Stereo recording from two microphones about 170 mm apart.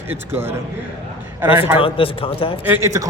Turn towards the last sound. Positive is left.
turn(degrees=-15)  # may be behind; listen again after turning